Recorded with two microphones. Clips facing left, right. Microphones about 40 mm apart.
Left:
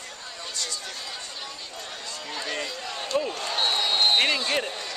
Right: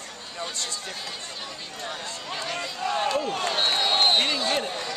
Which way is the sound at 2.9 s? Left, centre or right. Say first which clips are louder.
Right 8 dB; right.